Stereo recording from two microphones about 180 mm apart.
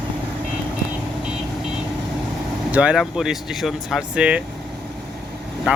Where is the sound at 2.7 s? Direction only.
5° right (ahead or behind).